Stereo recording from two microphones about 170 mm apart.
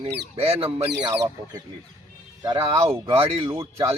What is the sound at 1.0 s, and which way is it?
A man's voice, 20° right (ahead or behind).